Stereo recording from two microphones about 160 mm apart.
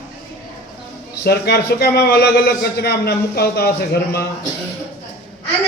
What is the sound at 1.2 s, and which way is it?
A man's voice, 90° left.